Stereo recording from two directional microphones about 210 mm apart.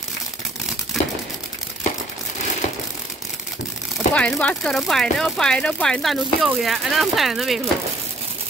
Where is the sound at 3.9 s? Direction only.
5° left (ahead or behind).